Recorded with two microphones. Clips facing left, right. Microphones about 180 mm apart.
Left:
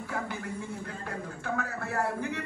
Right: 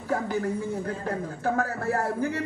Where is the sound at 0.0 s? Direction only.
40° right (ahead or behind).